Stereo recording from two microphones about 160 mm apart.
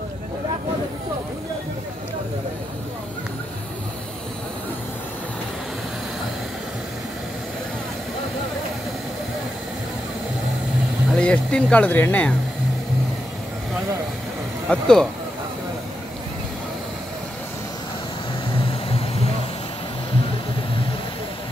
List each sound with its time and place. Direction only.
11.1 s speech: 5° left (ahead or behind)
14.7 s speech: 5° left (ahead or behind)
18.7 s vehicle: 35° left (ahead or behind)